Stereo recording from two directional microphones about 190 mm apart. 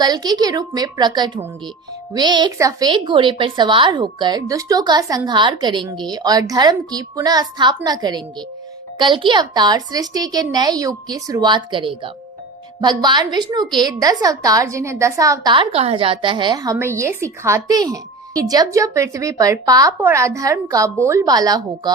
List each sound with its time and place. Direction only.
0.0 s a woman's voice: 20° right (ahead or behind)